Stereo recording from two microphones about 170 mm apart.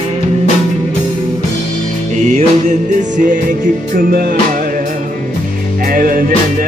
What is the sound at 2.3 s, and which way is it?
Music, 50° right (ahead or behind).